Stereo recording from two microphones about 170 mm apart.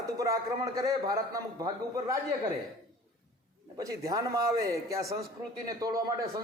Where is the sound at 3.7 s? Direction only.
20° right (ahead or behind).